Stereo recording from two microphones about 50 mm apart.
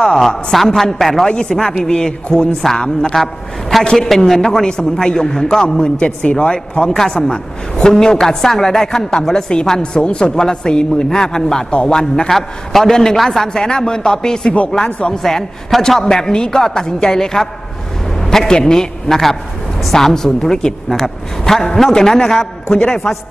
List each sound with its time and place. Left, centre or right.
0.0 s speech: centre
5.9 s speech: left
12.3 s a man's voice: centre